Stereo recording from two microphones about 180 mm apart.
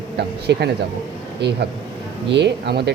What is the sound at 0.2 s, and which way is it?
Speech, 70° right (ahead or behind).